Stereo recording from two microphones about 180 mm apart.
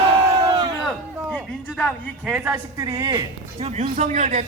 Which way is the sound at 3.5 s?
35° right (ahead or behind).